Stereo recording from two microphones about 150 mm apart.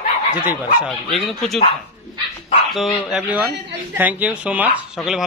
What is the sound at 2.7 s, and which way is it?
A woman's voice, centre (ahead or behind).